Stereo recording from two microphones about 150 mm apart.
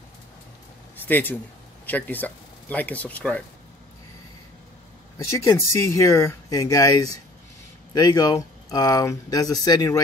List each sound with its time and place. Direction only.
0.9 s speech: 10° left (ahead or behind)
5.3 s speech: 20° left (ahead or behind)